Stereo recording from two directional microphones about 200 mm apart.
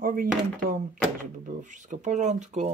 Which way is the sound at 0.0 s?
45° right (ahead or behind).